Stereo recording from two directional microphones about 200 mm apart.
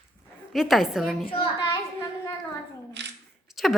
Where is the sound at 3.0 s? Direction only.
60° right (ahead or behind).